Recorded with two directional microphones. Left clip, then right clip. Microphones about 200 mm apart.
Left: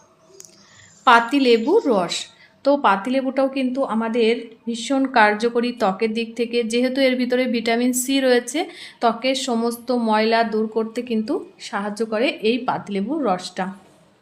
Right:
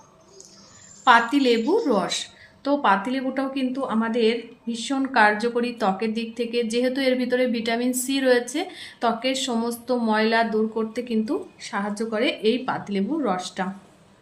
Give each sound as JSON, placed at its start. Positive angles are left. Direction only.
{"t": 1.0, "sound": "a woman's voice", "side_deg": 35}